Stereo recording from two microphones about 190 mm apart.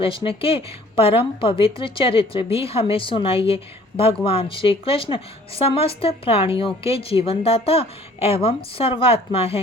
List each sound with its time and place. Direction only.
0.0 s a woman's voice: 30° left (ahead or behind)